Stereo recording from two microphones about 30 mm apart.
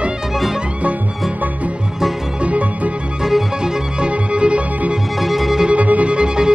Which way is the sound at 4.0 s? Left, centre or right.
Right.